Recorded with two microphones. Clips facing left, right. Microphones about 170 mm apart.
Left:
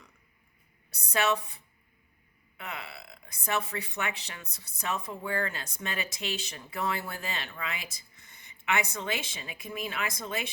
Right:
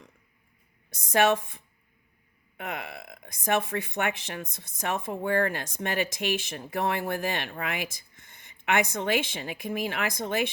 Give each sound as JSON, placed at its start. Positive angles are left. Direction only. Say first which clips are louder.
{"t": 2.6, "sound": "speech", "louder": "right 6 dB", "side_deg": -50}